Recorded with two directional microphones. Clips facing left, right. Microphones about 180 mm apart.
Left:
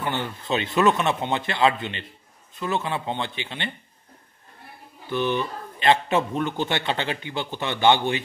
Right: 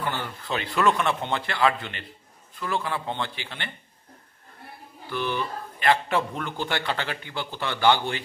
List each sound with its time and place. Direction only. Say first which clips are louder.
0.0 s a man's voice: left 3 dB; 20° left (ahead or behind)
5.1 s a man's voice: left 4 dB; 20° left (ahead or behind)